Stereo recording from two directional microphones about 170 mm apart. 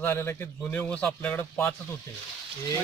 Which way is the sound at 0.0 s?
15° left (ahead or behind).